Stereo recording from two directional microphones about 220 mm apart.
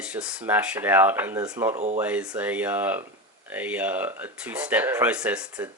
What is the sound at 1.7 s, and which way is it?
Speech, 30° right (ahead or behind).